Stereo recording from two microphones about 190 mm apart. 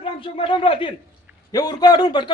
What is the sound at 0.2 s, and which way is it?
A man's voice, 25° left (ahead or behind).